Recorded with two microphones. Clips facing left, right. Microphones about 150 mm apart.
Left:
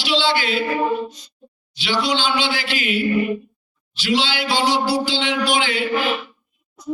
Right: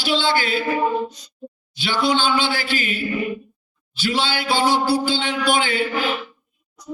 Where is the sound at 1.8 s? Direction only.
50° right (ahead or behind).